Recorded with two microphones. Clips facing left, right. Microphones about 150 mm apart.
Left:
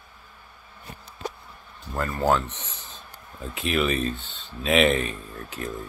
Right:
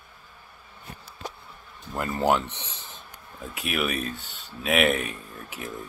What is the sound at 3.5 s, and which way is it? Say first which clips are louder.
Speech: left 4 dB; 10° right (ahead or behind).